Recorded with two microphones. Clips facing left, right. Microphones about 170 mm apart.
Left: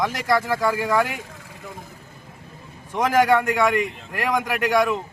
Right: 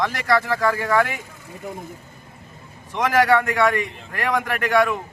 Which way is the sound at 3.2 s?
15° left (ahead or behind).